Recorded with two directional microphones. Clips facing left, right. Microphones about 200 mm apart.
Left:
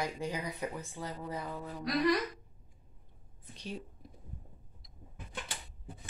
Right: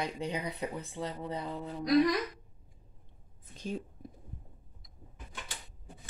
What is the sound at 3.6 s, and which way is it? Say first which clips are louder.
Whispering: right 5 dB; 50° right (ahead or behind).